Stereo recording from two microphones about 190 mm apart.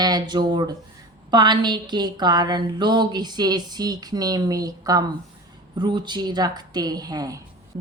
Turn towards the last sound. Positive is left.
turn(degrees=-20)  # may be behind; listen again after turning